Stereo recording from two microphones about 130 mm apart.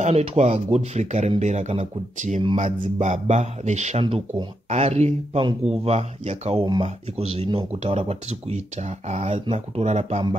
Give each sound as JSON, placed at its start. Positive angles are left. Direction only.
{"t": 0.0, "sound": "speech", "side_deg": -60}
{"t": 4.0, "sound": "speech", "side_deg": -40}
{"t": 4.6, "sound": "speech", "side_deg": -55}